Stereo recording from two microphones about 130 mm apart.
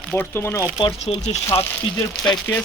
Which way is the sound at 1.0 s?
55° left (ahead or behind).